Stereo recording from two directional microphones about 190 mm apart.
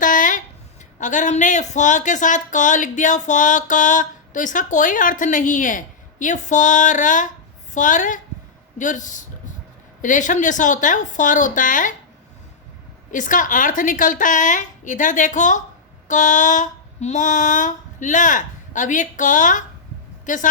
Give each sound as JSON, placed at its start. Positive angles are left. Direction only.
{"t": 0.0, "sound": "a sound", "side_deg": 45}
{"t": 0.9, "sound": "a woman's voice", "side_deg": 40}
{"t": 13.1, "sound": "a woman's voice", "side_deg": 45}